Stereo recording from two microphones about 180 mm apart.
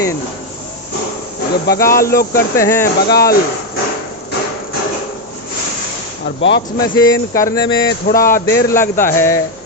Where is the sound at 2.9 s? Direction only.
60° left (ahead or behind).